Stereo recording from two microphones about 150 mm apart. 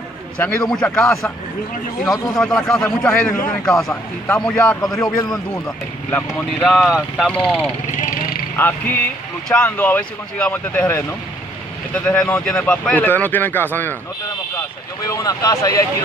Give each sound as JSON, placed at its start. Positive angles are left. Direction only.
{"t": 0.7, "sound": "speech", "side_deg": 5}
{"t": 2.3, "sound": "speech", "side_deg": 5}
{"t": 6.6, "sound": "speech", "side_deg": 0}
{"t": 7.8, "sound": "vehicle", "side_deg": 60}
{"t": 8.5, "sound": "speech", "side_deg": 10}
{"t": 15.1, "sound": "speech", "side_deg": 20}